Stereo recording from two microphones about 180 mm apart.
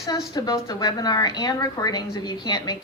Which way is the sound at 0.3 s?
20° left (ahead or behind).